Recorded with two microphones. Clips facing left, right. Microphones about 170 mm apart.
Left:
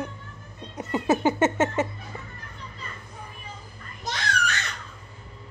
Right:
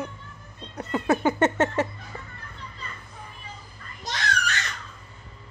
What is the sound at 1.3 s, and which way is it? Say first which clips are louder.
Speech: right 1 dB; 5° left (ahead or behind).